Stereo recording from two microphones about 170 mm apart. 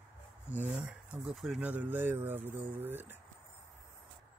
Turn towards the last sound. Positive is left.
turn(degrees=-10)  # may be behind; listen again after turning